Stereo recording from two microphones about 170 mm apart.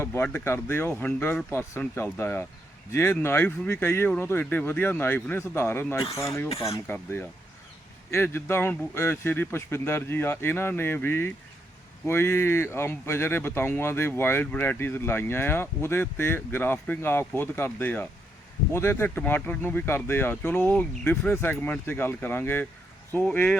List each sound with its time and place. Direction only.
0.0 s speech: 15° left (ahead or behind)